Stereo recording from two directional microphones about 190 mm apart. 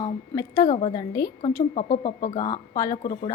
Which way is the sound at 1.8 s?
45° left (ahead or behind).